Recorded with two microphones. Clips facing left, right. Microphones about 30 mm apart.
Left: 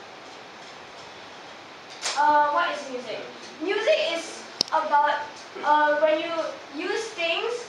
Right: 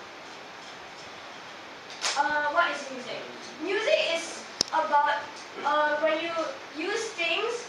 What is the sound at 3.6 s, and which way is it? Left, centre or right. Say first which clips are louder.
Speech: left 3 dB; left.